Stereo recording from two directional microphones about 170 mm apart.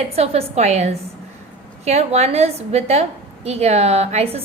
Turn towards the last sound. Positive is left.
turn(degrees=-40)  # may be behind; listen again after turning